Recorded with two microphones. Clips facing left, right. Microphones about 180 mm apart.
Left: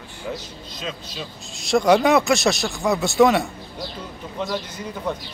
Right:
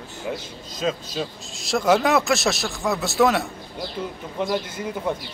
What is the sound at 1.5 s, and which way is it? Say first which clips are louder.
Speech: left 3 dB; centre (ahead or behind).